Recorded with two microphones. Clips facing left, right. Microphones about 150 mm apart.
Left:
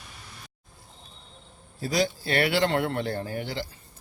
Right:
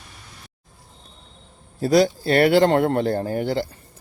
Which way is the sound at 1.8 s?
45° right (ahead or behind).